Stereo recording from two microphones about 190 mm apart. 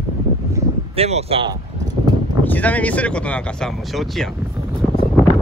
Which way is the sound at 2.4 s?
10° left (ahead or behind).